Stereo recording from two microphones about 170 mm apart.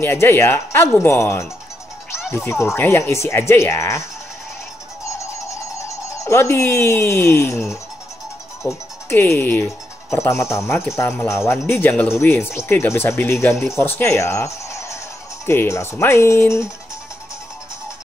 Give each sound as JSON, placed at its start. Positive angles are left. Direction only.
{"t": 0.0, "sound": "speech", "side_deg": 15}
{"t": 2.6, "sound": "speech", "side_deg": 15}
{"t": 5.0, "sound": "music", "side_deg": 15}
{"t": 8.6, "sound": "speech", "side_deg": 15}